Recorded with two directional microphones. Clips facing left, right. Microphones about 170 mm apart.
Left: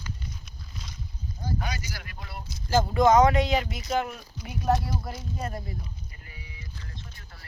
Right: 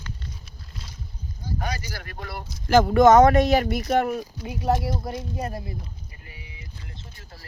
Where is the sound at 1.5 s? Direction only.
50° right (ahead or behind).